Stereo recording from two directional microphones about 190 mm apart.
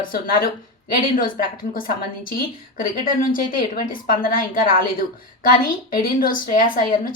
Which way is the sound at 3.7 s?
45° left (ahead or behind).